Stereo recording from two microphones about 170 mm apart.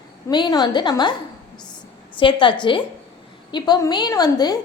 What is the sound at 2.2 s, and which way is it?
A woman's voice, 30° left (ahead or behind).